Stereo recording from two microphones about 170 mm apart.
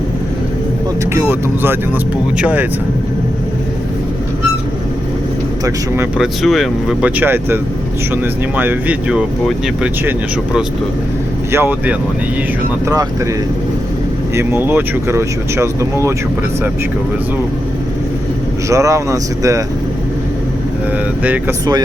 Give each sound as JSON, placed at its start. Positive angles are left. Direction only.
{"t": 1.1, "sound": "speech", "side_deg": -15}
{"t": 6.1, "sound": "speech", "side_deg": 0}
{"t": 14.3, "sound": "speech", "side_deg": -15}
{"t": 18.7, "sound": "speech", "side_deg": -20}